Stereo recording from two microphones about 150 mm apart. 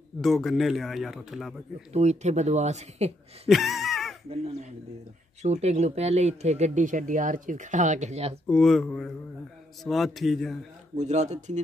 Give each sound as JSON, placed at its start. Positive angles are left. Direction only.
{"t": 0.2, "sound": "speech", "side_deg": 0}
{"t": 1.9, "sound": "speech", "side_deg": -45}
{"t": 3.4, "sound": "a sound", "side_deg": 0}
{"t": 4.3, "sound": "speech", "side_deg": -45}
{"t": 8.5, "sound": "speech", "side_deg": 5}
{"t": 11.0, "sound": "speech", "side_deg": -50}